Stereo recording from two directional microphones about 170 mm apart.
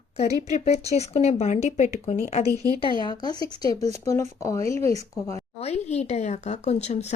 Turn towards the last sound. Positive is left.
turn(degrees=40)  # may be behind; listen again after turning